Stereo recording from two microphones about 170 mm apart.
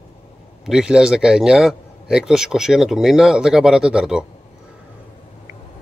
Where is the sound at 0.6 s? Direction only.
5° right (ahead or behind).